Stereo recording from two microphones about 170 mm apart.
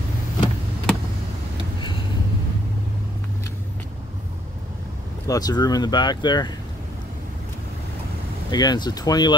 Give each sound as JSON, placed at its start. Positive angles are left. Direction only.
{"t": 5.2, "sound": "speech", "side_deg": 20}
{"t": 8.5, "sound": "speech", "side_deg": 25}